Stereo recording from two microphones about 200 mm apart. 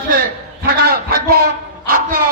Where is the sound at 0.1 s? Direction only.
45° right (ahead or behind).